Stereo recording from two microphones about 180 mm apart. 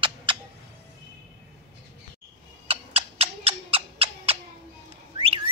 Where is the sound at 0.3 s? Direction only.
30° right (ahead or behind).